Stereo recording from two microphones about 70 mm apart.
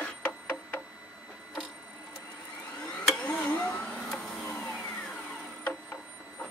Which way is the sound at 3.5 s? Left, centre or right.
Left.